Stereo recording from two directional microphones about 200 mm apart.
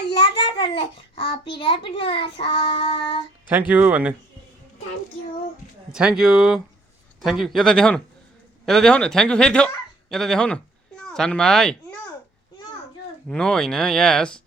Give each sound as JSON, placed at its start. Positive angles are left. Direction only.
{"t": 0.1, "sound": "a sound", "side_deg": 25}
{"t": 0.8, "sound": "child singing", "side_deg": 25}
{"t": 3.5, "sound": "speech", "side_deg": -10}
{"t": 5.9, "sound": "speech", "side_deg": -5}
{"t": 13.2, "sound": "speech", "side_deg": 5}